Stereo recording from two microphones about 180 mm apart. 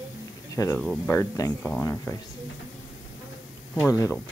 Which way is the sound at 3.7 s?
15° left (ahead or behind).